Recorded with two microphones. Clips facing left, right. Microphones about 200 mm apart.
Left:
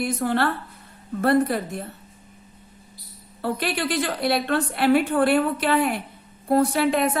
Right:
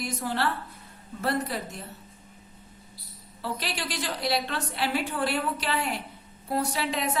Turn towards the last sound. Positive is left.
turn(degrees=55)  # may be behind; listen again after turning